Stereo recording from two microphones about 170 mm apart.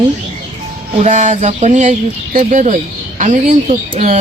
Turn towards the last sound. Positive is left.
turn(degrees=-40)  # may be behind; listen again after turning